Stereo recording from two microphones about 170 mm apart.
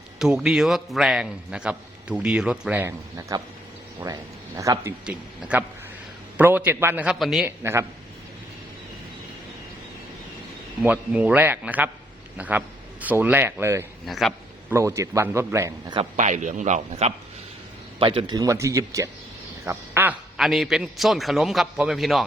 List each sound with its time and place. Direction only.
0.2 s a man's voice: 5° right (ahead or behind)
7.4 s a man's voice: 15° right (ahead or behind)
10.8 s a man's voice: 10° right (ahead or behind)
14.1 s a man's voice: centre (ahead or behind)
14.7 s a man's voice: 15° right (ahead or behind)
16.1 s speech: 45° right (ahead or behind)
18.0 s a man's voice: 30° right (ahead or behind); by 22.2 s centre (ahead or behind)